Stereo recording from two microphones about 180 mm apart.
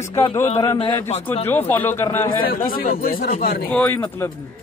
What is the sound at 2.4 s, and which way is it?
Speech, 55° left (ahead or behind).